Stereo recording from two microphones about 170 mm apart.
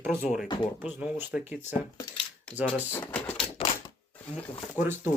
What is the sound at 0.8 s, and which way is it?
Speech, 10° right (ahead or behind).